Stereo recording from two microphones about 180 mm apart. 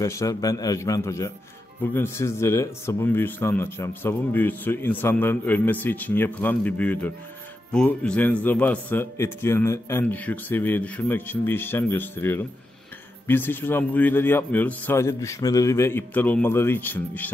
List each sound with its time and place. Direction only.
0.0 s a man's voice: 15° left (ahead or behind)